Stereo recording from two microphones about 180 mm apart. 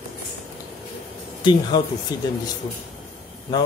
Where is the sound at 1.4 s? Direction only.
25° left (ahead or behind).